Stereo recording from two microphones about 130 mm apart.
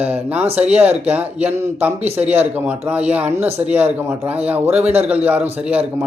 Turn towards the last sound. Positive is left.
turn(degrees=-10)  # may be behind; listen again after turning